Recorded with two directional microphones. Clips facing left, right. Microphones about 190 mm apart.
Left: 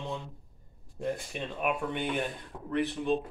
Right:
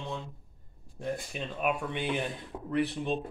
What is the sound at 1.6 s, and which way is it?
Speech, centre (ahead or behind).